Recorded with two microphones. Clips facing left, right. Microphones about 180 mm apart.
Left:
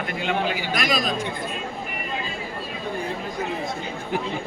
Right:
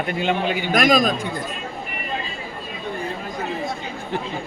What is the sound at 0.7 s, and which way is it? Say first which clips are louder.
Speech: right 9 dB; 50° right (ahead or behind).